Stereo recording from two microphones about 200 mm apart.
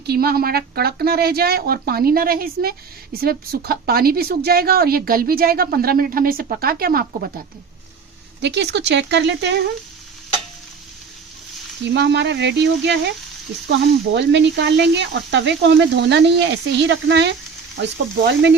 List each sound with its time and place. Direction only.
0.1 s a woman's voice: 50° right (ahead or behind)
8.4 s speech: 60° right (ahead or behind)
11.9 s speech: 60° right (ahead or behind)